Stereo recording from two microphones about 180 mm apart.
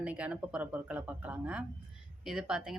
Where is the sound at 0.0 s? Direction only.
5° right (ahead or behind).